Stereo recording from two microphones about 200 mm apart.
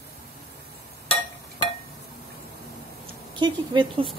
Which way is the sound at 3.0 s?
25° right (ahead or behind).